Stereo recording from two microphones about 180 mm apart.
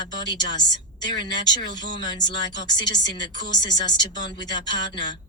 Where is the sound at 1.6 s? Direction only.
80° left.